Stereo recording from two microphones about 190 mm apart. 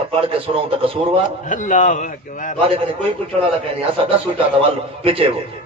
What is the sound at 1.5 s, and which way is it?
A man's voice, 40° left (ahead or behind).